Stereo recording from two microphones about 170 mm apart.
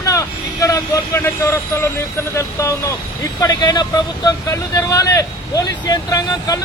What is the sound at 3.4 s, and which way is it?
Speech, 25° left (ahead or behind).